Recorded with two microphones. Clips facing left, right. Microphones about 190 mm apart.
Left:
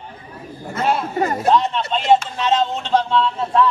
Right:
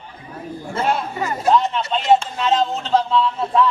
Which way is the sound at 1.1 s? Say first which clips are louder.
Left 4 dB; 45° left (ahead or behind).